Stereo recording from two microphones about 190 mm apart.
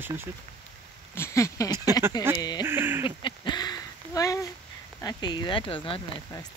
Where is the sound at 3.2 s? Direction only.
25° left (ahead or behind).